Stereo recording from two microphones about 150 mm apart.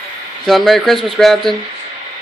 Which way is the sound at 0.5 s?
Centre (ahead or behind).